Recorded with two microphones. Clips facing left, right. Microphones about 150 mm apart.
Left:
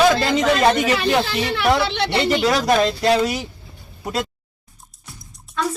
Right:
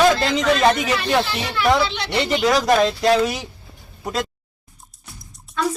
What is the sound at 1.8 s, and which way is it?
Speech, 55° left (ahead or behind).